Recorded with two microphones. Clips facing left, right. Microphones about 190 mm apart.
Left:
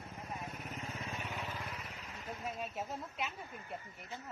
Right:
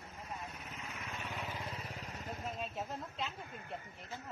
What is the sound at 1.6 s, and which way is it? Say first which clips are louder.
Vehicle: right 2 dB; 30° right (ahead or behind).